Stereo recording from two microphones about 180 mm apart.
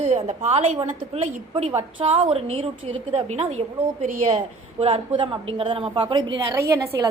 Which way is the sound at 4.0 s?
45° right (ahead or behind).